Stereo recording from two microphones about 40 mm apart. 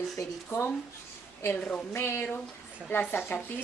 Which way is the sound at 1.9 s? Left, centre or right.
Left.